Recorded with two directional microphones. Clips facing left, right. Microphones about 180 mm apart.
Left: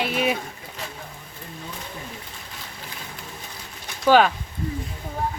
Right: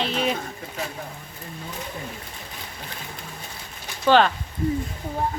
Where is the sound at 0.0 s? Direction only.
10° left (ahead or behind).